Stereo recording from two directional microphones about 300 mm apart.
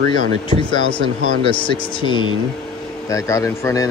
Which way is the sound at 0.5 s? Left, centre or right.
Centre.